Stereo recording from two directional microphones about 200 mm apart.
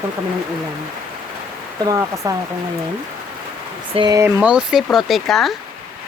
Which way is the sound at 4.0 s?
20° right (ahead or behind).